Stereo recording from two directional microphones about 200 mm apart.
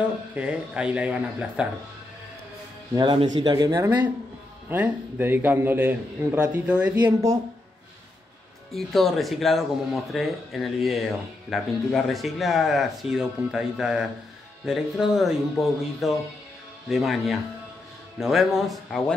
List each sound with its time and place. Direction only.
0.3 s speech: 5° right (ahead or behind)
2.9 s a man's voice: 25° right (ahead or behind)
8.7 s speech: centre (ahead or behind)